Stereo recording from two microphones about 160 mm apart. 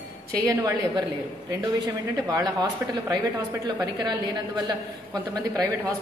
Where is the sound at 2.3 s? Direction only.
25° right (ahead or behind).